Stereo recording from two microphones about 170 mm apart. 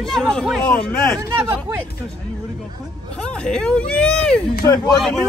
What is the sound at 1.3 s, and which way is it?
Speech, 15° right (ahead or behind).